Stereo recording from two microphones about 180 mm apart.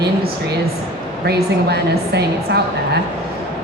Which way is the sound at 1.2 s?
65° right (ahead or behind).